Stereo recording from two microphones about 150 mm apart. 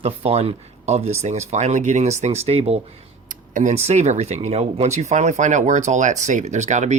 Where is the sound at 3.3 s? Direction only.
55° right (ahead or behind).